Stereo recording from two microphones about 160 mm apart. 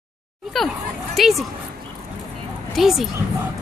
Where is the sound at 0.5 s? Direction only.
Centre (ahead or behind).